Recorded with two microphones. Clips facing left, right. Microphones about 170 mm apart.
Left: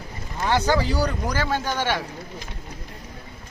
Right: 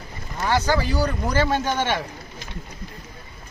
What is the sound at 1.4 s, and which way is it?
Speech, 15° right (ahead or behind).